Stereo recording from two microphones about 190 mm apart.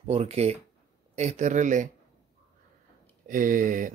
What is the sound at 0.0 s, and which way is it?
Speech, 30° right (ahead or behind).